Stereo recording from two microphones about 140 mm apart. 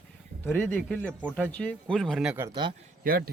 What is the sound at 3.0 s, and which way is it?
Speech, 90° right.